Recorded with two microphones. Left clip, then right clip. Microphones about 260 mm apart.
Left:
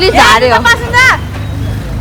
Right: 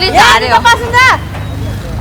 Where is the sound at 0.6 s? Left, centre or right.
Right.